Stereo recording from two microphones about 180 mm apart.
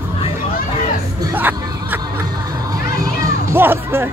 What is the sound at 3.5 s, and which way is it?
Music, 10° right (ahead or behind).